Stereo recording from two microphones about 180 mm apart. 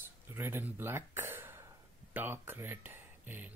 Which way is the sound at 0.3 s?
15° right (ahead or behind).